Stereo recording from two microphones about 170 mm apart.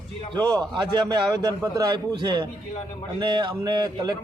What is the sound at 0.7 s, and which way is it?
A man's voice, 25° right (ahead or behind).